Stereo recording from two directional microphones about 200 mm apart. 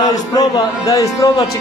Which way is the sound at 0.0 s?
15° left (ahead or behind).